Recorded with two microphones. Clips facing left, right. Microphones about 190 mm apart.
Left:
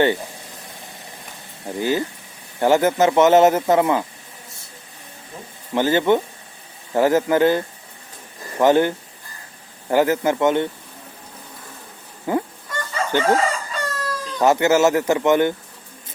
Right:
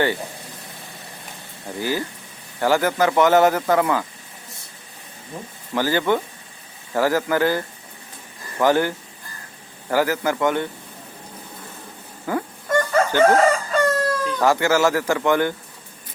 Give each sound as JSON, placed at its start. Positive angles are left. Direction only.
{"t": 1.6, "sound": "speech", "side_deg": 20}
{"t": 5.7, "sound": "speech", "side_deg": 20}
{"t": 9.9, "sound": "speech", "side_deg": 25}
{"t": 12.3, "sound": "speech", "side_deg": 20}
{"t": 12.6, "sound": "chicken", "side_deg": -50}
{"t": 14.4, "sound": "speech", "side_deg": 20}